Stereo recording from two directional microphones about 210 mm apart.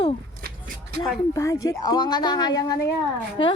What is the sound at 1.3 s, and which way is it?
A woman's voice, 15° left (ahead or behind).